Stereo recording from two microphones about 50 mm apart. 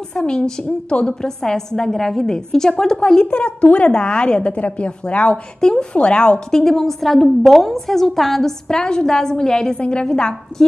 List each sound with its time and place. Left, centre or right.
0.1 s a woman's voice: centre
6.6 s a woman's voice: centre